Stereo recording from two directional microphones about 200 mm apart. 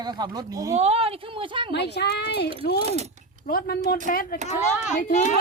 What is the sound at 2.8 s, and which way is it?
Speech, 30° right (ahead or behind).